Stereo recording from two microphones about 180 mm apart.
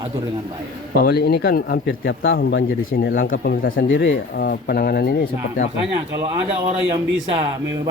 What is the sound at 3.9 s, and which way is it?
Speech, 85° left.